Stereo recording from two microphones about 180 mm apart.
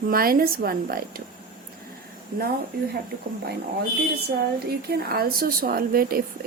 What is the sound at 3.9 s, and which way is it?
A woman's voice, 60° right (ahead or behind).